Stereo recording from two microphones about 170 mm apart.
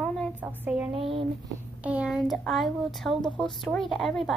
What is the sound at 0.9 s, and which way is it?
Speech, 35° right (ahead or behind).